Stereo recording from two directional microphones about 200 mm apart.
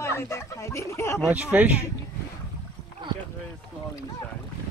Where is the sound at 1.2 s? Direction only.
5° right (ahead or behind).